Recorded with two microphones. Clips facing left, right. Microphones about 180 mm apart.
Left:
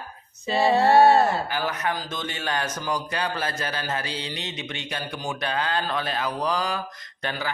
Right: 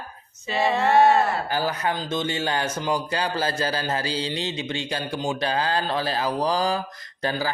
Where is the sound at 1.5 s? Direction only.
30° right (ahead or behind).